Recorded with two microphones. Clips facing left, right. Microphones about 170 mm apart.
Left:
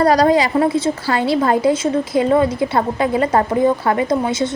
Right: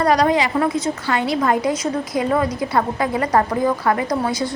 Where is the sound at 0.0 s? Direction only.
35° left (ahead or behind).